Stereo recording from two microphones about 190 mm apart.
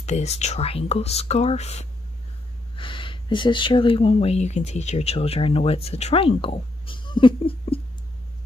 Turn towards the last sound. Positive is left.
turn(degrees=30)  # may be behind; listen again after turning